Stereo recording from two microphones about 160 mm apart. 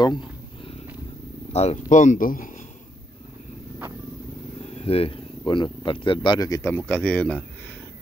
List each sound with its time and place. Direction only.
1.5 s speech: 40° left (ahead or behind); by 2.6 s 60° left (ahead or behind)
4.7 s speech: 40° left (ahead or behind); by 6.7 s 20° left (ahead or behind)
6.7 s speech: 10° left (ahead or behind)